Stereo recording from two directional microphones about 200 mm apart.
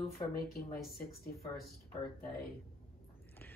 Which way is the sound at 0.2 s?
25° left (ahead or behind).